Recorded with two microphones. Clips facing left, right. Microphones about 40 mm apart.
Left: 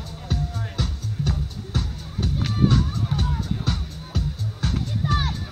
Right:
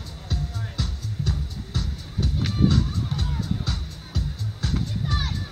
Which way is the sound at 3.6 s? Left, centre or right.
Left.